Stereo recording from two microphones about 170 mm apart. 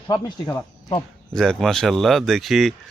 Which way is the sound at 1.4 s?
5° left (ahead or behind).